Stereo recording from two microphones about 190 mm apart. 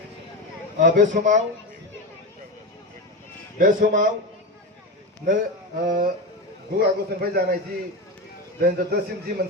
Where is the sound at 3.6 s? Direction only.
45° right (ahead or behind).